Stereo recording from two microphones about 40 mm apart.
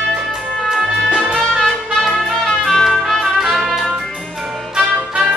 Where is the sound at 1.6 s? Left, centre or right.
Centre.